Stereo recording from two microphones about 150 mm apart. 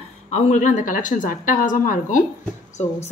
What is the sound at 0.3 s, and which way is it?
A woman's voice, 55° left (ahead or behind).